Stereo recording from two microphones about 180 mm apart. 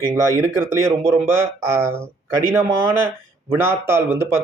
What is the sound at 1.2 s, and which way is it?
Speech, 15° right (ahead or behind).